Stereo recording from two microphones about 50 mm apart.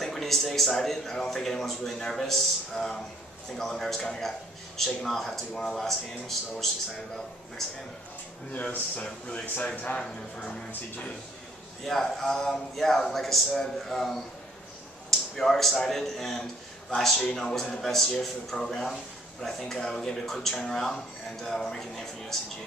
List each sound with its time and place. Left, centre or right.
0.0 s speech: centre
8.9 s speech: left
11.8 s speech: centre